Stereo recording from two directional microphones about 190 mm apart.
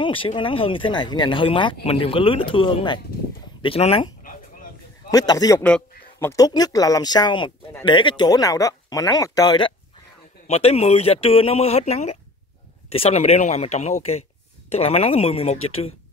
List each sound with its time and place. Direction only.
0.0 s speech: 30° left (ahead or behind)
5.1 s speech: 20° left (ahead or behind)
5.6 s a man's voice: 5° left (ahead or behind)
6.1 s speech: 20° left (ahead or behind); by 15.6 s 35° left (ahead or behind)